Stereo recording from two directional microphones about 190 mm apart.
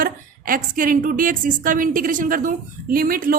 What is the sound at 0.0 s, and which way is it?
Speech, 45° right (ahead or behind).